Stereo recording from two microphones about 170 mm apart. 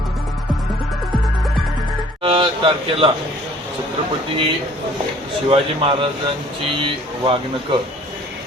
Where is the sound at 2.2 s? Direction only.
30° right (ahead or behind).